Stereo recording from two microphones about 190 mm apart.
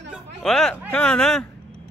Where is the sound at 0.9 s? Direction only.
5° left (ahead or behind).